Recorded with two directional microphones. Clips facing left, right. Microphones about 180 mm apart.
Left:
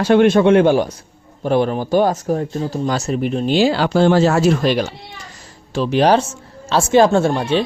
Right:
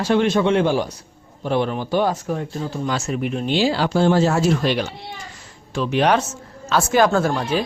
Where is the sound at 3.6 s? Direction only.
65° left (ahead or behind).